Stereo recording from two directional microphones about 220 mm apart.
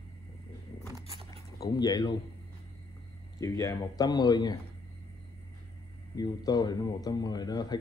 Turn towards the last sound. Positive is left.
turn(degrees=20)  # may be behind; listen again after turning